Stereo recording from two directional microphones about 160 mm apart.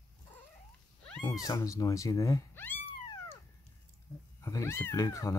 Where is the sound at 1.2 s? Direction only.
25° left (ahead or behind).